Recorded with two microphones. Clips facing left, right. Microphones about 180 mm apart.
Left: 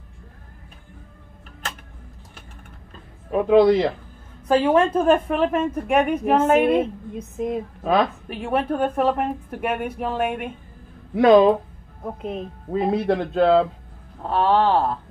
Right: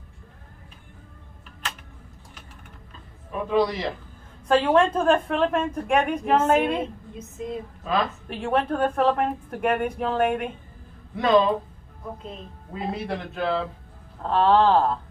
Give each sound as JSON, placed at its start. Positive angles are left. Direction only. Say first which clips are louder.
{"t": 3.3, "sound": "speech", "louder": "left 8 dB", "side_deg": 70}
{"t": 4.5, "sound": "a woman's voice", "louder": "left 2 dB", "side_deg": 10}
{"t": 7.2, "sound": "speech", "louder": "left 6 dB", "side_deg": 60}
{"t": 8.3, "sound": "a woman's voice", "louder": "left 1 dB", "side_deg": 5}
{"t": 11.1, "sound": "speech", "louder": "left 6 dB", "side_deg": 50}
{"t": 12.0, "sound": "speech", "louder": "left 8 dB", "side_deg": 60}
{"t": 14.2, "sound": "a woman's voice", "louder": "even", "side_deg": 5}